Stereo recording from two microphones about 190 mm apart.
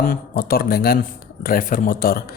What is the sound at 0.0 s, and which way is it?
Speech, 50° left (ahead or behind).